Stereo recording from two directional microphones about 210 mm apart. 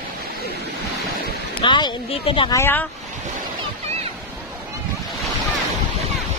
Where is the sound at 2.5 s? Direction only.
10° left (ahead or behind).